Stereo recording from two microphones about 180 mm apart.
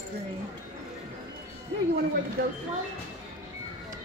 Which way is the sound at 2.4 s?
65° right (ahead or behind).